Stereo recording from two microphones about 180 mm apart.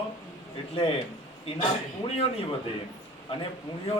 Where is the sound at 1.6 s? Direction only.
30° left (ahead or behind).